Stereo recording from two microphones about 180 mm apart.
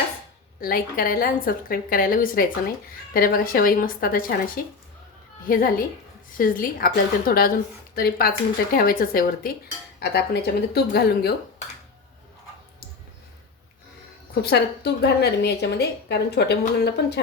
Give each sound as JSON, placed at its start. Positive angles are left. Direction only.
{"t": 0.6, "sound": "a woman's voice", "side_deg": 55}
{"t": 10.0, "sound": "a woman's voice", "side_deg": 65}
{"t": 15.0, "sound": "a woman's voice", "side_deg": 65}